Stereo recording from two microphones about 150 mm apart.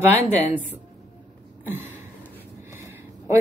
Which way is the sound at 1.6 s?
15° right (ahead or behind).